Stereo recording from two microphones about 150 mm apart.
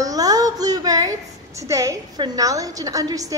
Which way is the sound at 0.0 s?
25° right (ahead or behind).